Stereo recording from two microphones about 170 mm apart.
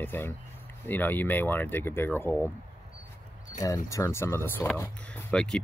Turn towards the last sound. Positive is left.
turn(degrees=5)  # may be behind; listen again after turning